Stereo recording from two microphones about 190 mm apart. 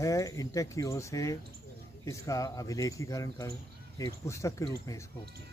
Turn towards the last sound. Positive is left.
turn(degrees=15)  # may be behind; listen again after turning